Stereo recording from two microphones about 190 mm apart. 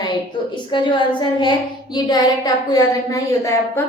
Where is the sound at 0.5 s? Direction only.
25° left (ahead or behind).